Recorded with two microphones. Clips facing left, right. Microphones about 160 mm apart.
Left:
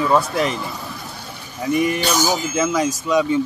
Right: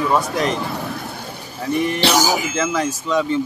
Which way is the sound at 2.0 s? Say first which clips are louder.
Right 2 dB; 80° right.